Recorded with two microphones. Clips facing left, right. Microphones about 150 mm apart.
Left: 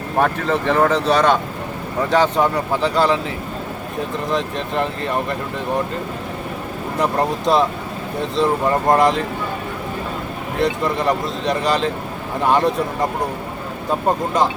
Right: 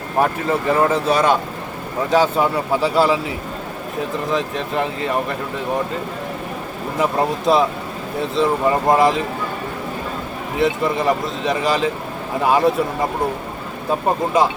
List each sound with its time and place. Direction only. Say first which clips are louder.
0.2 s speech: even; 10° right (ahead or behind)
4.3 s speech: even; centre (ahead or behind)
7.0 s speech: right 1 dB; 5° right (ahead or behind)
10.6 s speech: right 1 dB; centre (ahead or behind)